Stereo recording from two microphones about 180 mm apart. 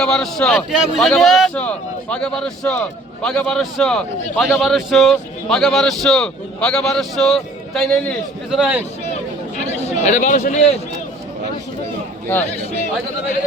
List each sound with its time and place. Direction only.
0.0 s a man's voice: 5° left (ahead or behind)
9.0 s a sound: 40° left (ahead or behind)
12.3 s speech: 10° left (ahead or behind)